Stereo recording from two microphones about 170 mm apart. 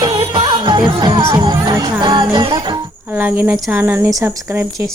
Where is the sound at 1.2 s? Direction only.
25° right (ahead or behind).